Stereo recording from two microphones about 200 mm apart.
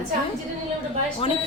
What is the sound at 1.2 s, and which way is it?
Speech, 30° left (ahead or behind).